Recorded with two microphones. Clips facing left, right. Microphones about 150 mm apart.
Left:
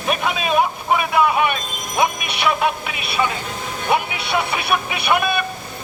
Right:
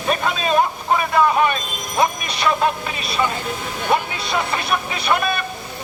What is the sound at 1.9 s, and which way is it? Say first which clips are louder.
Music: even; 10° left (ahead or behind).